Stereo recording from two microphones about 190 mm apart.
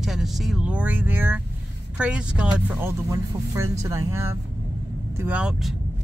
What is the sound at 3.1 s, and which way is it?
A man's voice, 15° right (ahead or behind).